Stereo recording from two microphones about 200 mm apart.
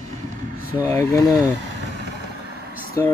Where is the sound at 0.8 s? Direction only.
15° left (ahead or behind).